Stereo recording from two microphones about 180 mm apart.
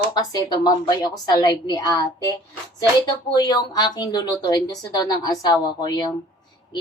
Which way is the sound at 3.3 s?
20° left (ahead or behind).